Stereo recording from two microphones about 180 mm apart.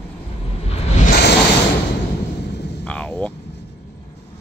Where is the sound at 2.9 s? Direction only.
10° left (ahead or behind).